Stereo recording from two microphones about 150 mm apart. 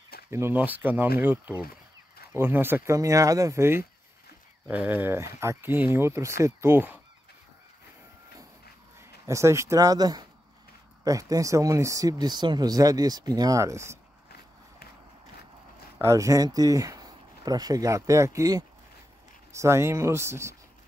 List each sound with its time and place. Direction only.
0.3 s speech: 15° right (ahead or behind)
9.2 s speech: 20° right (ahead or behind)
16.0 s speech: 20° right (ahead or behind)